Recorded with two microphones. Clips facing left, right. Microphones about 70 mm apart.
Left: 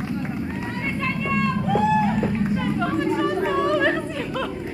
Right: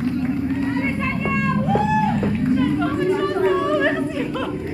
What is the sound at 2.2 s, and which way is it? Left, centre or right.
Chatter, centre.